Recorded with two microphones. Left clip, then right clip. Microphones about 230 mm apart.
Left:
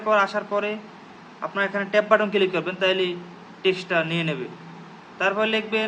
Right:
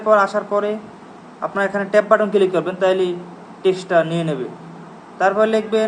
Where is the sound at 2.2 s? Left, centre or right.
Centre.